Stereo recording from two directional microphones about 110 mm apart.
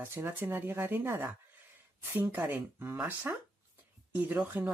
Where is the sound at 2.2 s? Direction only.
15° right (ahead or behind).